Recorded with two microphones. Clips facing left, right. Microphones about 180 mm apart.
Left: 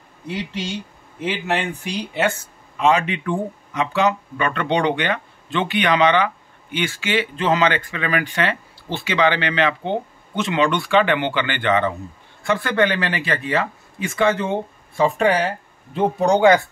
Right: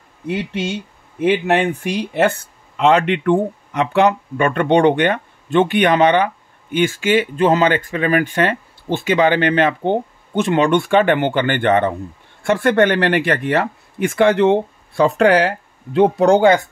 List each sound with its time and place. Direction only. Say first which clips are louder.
0.3 s speech: right 5 dB; 55° right (ahead or behind); by 16.3 s 75° right (ahead or behind)
16.3 s speech: right 1 dB; 25° right (ahead or behind)